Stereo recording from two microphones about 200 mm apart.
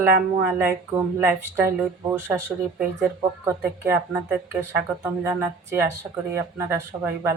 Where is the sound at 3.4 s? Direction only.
10° right (ahead or behind).